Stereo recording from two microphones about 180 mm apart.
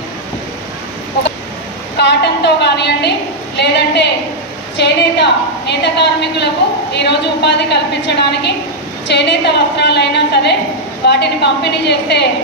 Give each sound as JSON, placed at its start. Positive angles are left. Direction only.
{"t": 2.0, "sound": "a woman's voice", "side_deg": 70}